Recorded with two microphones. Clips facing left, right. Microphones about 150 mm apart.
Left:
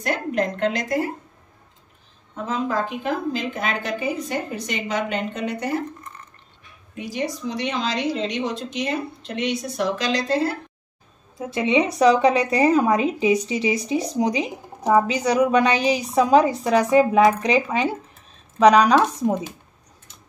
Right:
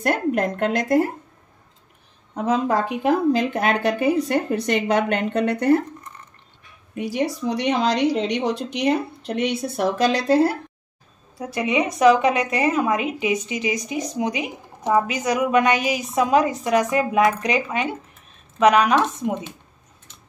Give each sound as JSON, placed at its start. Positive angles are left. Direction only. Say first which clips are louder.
{"t": 0.0, "sound": "a woman's voice", "louder": "right 3 dB", "side_deg": -55}
{"t": 2.3, "sound": "a woman's voice", "louder": "right 4 dB", "side_deg": -70}
{"t": 7.0, "sound": "a woman's voice", "louder": "right 4 dB", "side_deg": -60}
{"t": 11.3, "sound": "a woman's voice", "louder": "left 2 dB", "side_deg": 25}
{"t": 14.8, "sound": "speech", "louder": "left 2 dB", "side_deg": 15}
{"t": 15.0, "sound": "a woman's voice", "louder": "left 3 dB", "side_deg": 35}